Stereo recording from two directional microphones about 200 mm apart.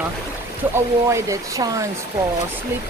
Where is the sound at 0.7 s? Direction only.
15° right (ahead or behind).